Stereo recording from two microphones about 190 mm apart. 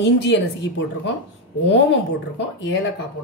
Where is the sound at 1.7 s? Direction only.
70° left (ahead or behind).